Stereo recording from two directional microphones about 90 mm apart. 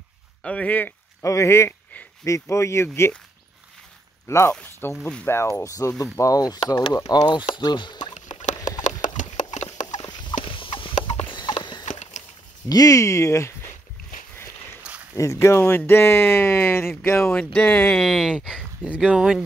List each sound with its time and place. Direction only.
0.4 s speech: 15° left (ahead or behind)
1.2 s speech: 35° left (ahead or behind)
4.3 s speech: 30° left (ahead or behind)
7.2 s speech: 60° left (ahead or behind)
9.9 s fowl: 55° left (ahead or behind)
10.4 s clip-clop: 75° left (ahead or behind)
12.6 s speech: 45° left (ahead or behind)
14.8 s a sound: 15° right (ahead or behind)
15.1 s speech: 30° left (ahead or behind)
17.3 s speech: 10° left (ahead or behind)
18.0 s speech: 5° right (ahead or behind)